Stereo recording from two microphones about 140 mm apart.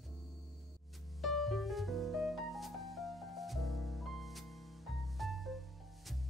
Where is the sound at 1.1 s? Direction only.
Centre (ahead or behind).